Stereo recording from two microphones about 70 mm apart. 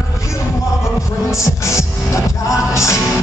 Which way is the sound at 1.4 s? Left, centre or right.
Left.